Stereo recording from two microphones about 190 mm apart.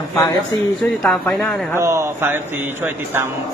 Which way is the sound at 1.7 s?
15° right (ahead or behind).